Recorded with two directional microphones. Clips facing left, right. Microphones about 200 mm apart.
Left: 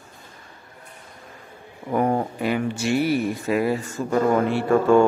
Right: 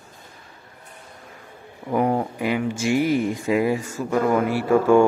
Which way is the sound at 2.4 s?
15° right (ahead or behind).